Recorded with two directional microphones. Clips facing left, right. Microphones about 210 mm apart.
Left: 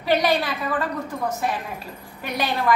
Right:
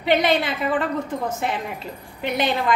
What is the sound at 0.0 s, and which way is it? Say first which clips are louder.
A woman's voice: right 1 dB; 25° right (ahead or behind).